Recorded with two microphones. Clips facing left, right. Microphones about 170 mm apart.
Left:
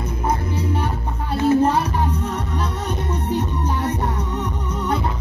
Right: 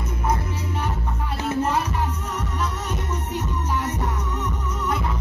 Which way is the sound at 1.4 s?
30° left (ahead or behind).